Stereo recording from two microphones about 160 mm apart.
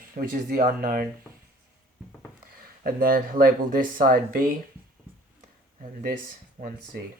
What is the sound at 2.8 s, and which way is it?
Speech, 65° right (ahead or behind).